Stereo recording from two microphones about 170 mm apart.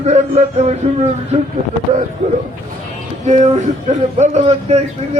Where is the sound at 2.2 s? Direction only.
40° right (ahead or behind).